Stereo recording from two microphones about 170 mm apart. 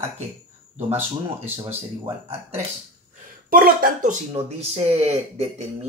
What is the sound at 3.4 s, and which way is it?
Speech, 55° right (ahead or behind).